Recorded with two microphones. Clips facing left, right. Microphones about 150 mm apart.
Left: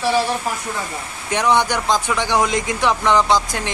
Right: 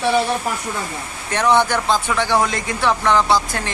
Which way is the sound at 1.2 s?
10° left (ahead or behind).